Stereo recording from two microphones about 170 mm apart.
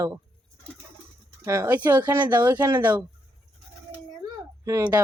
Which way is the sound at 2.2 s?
10° right (ahead or behind).